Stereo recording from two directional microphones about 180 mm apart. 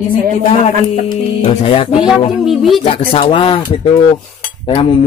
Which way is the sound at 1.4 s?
30° left (ahead or behind).